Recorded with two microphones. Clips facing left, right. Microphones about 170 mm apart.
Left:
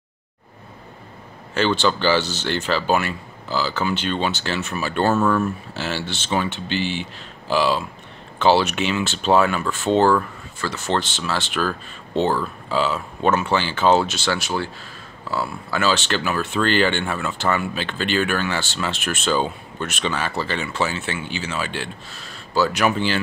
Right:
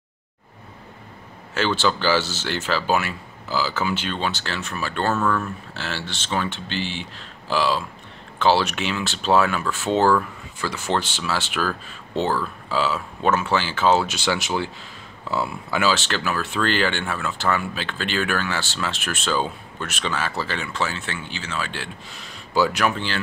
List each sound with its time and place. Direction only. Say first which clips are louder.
1.5 s speech: left 2 dB; 5° right (ahead or behind)
15.9 s speech: left 2 dB; centre (ahead or behind)
22.1 s a sound: even; 15° right (ahead or behind)
22.7 s speech: left 3 dB; 5° left (ahead or behind)